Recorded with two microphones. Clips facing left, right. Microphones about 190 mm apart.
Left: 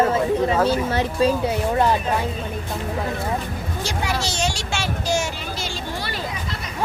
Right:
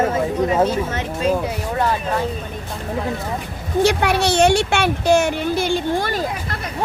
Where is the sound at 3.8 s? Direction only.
65° right (ahead or behind).